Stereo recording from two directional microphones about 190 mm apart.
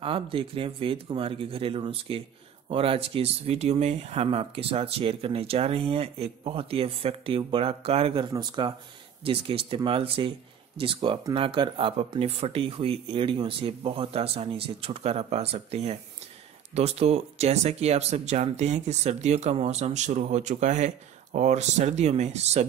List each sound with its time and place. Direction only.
0.0 s speech: 30° right (ahead or behind)